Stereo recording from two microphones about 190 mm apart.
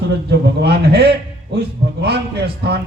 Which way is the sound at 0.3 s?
55° right (ahead or behind).